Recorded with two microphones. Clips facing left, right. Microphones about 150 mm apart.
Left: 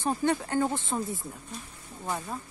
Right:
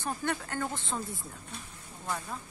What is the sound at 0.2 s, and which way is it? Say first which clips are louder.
Speech: left 7 dB; 20° left (ahead or behind).